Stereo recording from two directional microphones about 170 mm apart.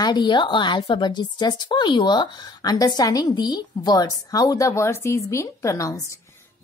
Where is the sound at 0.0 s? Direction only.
25° left (ahead or behind).